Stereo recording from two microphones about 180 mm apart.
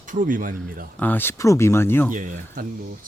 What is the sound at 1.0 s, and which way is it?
Speech, 10° left (ahead or behind).